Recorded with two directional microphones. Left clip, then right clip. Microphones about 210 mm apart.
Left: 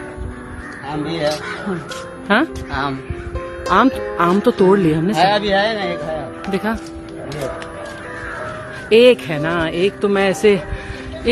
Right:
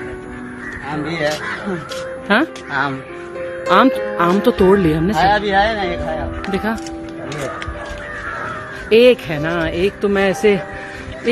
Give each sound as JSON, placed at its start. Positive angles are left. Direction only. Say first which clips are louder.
{"t": 1.0, "sound": "a man's voice", "louder": "even", "side_deg": 0}
{"t": 3.6, "sound": "a man's voice", "louder": "right 2 dB", "side_deg": -5}
{"t": 5.1, "sound": "speech", "louder": "right 1 dB", "side_deg": 45}
{"t": 6.5, "sound": "a man's voice", "louder": "even", "side_deg": 0}
{"t": 8.8, "sound": "a man's voice", "louder": "even", "side_deg": 0}